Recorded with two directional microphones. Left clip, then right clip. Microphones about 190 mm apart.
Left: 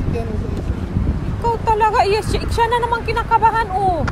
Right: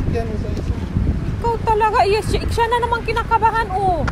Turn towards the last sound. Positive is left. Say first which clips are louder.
# left 1 dB
turn(degrees=0)  # may be behind; listen again after turning